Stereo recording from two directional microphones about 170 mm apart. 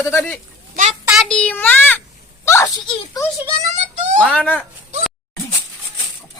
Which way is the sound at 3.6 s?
45° right (ahead or behind).